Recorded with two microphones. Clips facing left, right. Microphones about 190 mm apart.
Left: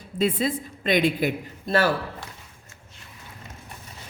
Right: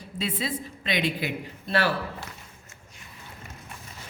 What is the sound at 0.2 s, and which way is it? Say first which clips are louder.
A woman's voice: left 7 dB; 50° left (ahead or behind).